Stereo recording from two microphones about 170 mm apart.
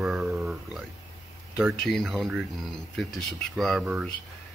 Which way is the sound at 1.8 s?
Centre (ahead or behind).